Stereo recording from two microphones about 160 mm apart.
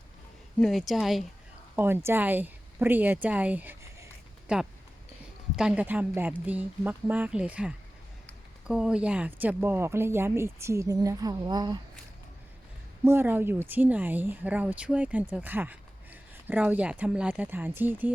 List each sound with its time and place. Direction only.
0.6 s speech: centre (ahead or behind)
1.7 s a woman's voice: 15° right (ahead or behind)
13.1 s a woman's voice: 15° right (ahead or behind)